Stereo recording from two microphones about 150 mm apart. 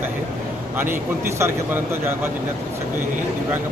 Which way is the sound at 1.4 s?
15° right (ahead or behind).